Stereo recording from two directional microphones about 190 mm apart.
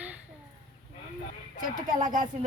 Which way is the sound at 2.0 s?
45° right (ahead or behind).